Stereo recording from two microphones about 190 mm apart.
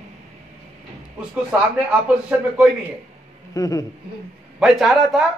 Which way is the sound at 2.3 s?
5° right (ahead or behind).